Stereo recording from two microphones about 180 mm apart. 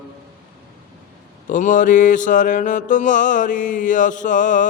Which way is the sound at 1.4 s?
45° left (ahead or behind).